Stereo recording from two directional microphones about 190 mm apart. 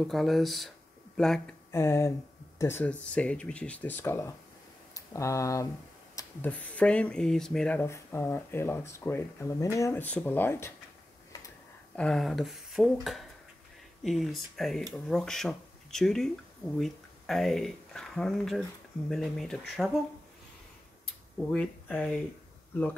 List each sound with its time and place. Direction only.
0.0 s speech: centre (ahead or behind)
1.7 s speech: 15° left (ahead or behind)
21.5 s speech: 5° left (ahead or behind)